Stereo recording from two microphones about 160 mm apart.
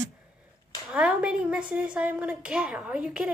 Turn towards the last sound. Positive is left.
turn(degrees=-5)  # may be behind; listen again after turning